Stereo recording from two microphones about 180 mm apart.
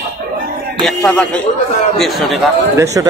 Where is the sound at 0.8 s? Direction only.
5° left (ahead or behind).